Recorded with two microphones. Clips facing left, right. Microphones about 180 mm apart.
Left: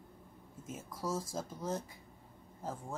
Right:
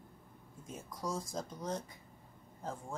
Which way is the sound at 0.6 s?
5° left (ahead or behind).